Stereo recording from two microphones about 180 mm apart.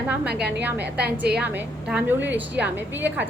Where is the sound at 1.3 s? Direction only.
10° right (ahead or behind).